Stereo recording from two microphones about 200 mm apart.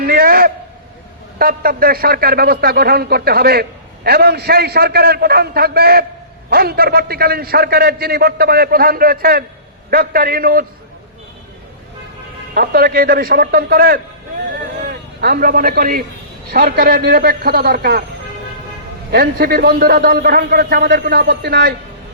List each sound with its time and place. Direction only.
0.0 s a sound: 50° right (ahead or behind)
1.4 s a man's voice: 45° right (ahead or behind)
12.5 s a man's voice: 50° right (ahead or behind)
15.2 s a man's voice: 45° right (ahead or behind)
19.1 s a man's voice: 50° right (ahead or behind)